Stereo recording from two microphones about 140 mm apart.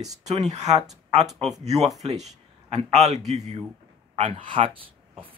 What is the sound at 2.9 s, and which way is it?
Speech, 50° right (ahead or behind).